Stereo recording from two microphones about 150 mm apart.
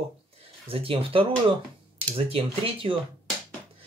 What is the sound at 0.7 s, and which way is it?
Speech, 40° right (ahead or behind).